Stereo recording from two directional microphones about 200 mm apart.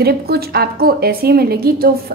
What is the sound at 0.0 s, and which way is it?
A woman's voice, 50° right (ahead or behind).